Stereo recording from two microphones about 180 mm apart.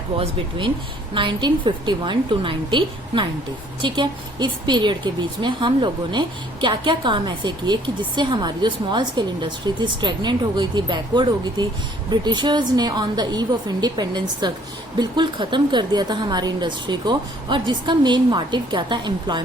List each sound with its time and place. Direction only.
0.1 s a woman's voice: 30° right (ahead or behind)